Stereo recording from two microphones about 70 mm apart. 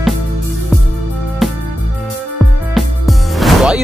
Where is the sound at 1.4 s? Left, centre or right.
Centre.